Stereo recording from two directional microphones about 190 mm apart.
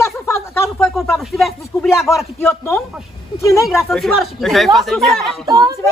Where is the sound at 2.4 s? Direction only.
15° left (ahead or behind).